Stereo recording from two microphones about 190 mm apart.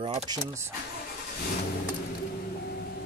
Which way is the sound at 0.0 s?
25° right (ahead or behind).